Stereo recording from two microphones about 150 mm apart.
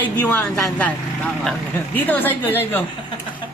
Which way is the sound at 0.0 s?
10° left (ahead or behind).